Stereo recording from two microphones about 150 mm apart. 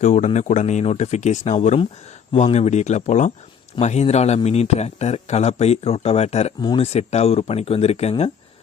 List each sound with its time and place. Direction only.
0.0 s speech: 50° left (ahead or behind)
6.6 s speech: 30° left (ahead or behind)
6.8 s speech: 45° left (ahead or behind)